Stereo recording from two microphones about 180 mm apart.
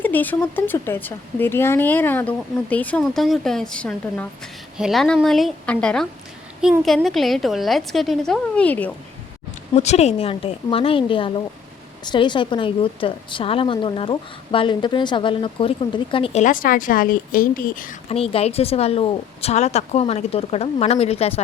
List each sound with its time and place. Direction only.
0.0 s a woman's voice: 10° left (ahead or behind)
9.7 s a woman's voice: 40° left (ahead or behind)
18.1 s speech: 30° left (ahead or behind)